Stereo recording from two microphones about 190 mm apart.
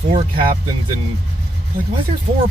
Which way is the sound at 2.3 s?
30° right (ahead or behind).